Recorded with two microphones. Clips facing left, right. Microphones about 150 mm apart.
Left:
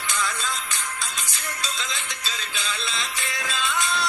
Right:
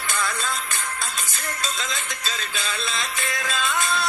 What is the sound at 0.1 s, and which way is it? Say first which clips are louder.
Music: right 2 dB; 55° right (ahead or behind).